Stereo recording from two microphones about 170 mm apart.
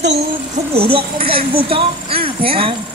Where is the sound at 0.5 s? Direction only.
35° right (ahead or behind).